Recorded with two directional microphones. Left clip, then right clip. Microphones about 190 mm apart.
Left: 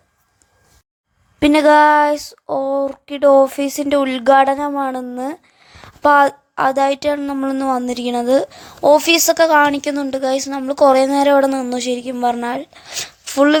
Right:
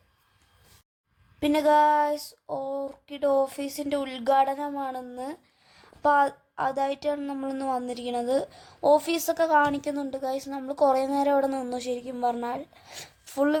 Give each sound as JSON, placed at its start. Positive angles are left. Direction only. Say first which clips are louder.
{"t": 1.4, "sound": "speech", "louder": "left 10 dB", "side_deg": 35}